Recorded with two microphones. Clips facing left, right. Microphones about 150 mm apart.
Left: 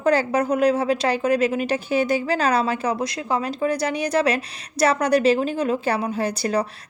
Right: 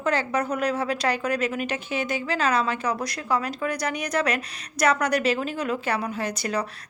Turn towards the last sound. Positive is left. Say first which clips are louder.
# left 5 dB
turn(degrees=30)  # may be behind; listen again after turning